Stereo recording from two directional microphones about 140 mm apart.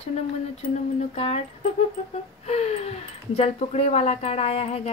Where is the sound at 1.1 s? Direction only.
45° left (ahead or behind).